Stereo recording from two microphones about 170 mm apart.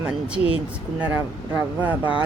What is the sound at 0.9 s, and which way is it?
Speech, 10° right (ahead or behind).